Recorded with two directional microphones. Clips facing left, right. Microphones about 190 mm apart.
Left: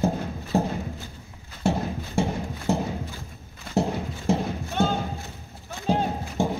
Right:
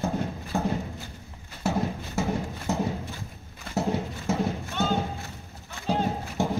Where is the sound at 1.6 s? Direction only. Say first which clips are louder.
Left 2 dB; 30° left (ahead or behind).